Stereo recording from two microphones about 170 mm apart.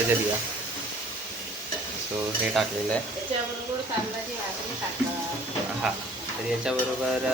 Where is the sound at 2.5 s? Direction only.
Centre (ahead or behind).